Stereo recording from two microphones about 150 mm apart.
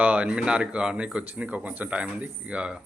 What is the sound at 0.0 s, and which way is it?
Speech, 10° right (ahead or behind).